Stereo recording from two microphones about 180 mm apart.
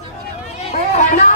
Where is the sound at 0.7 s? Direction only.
40° left (ahead or behind).